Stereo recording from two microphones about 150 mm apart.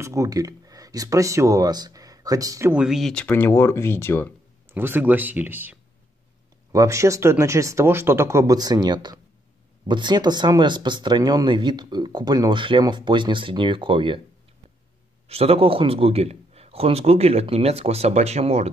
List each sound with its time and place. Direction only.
0.0 s speech: 20° right (ahead or behind)
2.7 s speech: 5° right (ahead or behind)
3.3 s speech: 15° left (ahead or behind)
4.6 s speech: 15° right (ahead or behind); by 14.2 s 35° right (ahead or behind)
15.2 s a man's voice: 40° right (ahead or behind)